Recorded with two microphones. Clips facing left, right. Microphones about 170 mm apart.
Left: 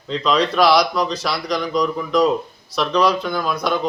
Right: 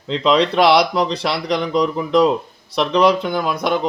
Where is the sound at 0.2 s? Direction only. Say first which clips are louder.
Right 2 dB; 25° right (ahead or behind).